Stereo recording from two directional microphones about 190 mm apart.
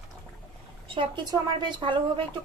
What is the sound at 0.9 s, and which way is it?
A woman's voice, 25° right (ahead or behind).